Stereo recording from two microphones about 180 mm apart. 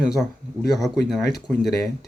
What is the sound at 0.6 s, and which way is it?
Speech, centre (ahead or behind).